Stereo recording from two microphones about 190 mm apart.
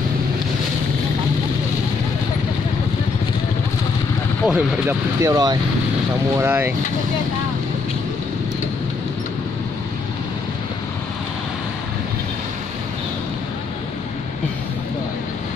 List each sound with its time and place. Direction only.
4.5 s speech: 5° right (ahead or behind)
5.2 s speech: 20° right (ahead or behind)